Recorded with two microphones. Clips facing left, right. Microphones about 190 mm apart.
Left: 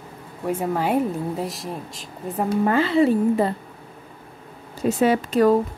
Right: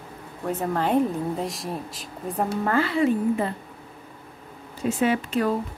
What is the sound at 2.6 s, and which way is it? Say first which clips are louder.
Speech: left 5 dB; 20° left (ahead or behind).